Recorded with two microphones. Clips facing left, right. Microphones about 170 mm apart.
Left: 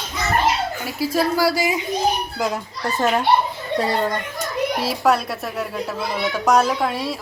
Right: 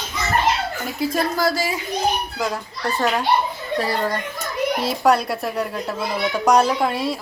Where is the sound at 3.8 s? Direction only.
25° left (ahead or behind).